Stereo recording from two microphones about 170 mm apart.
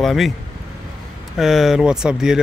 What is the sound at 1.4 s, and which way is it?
Speech, centre (ahead or behind).